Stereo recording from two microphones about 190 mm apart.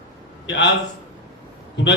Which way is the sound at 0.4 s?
70° left (ahead or behind).